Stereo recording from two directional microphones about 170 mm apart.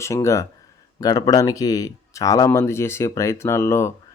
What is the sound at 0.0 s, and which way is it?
Speech, 15° left (ahead or behind).